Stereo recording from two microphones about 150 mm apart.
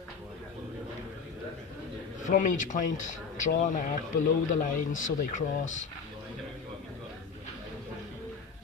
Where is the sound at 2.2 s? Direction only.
60° left (ahead or behind).